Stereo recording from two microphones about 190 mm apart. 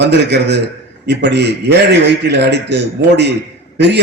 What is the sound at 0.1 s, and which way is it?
A man's voice, 60° right (ahead or behind).